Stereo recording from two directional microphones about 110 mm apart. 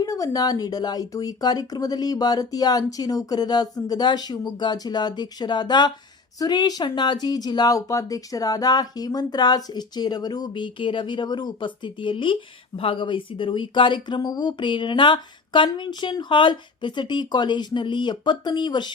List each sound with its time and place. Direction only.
0.0 s speech: 30° left (ahead or behind)